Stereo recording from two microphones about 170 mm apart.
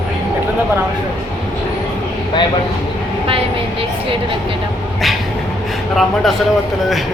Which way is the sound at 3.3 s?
35° right (ahead or behind).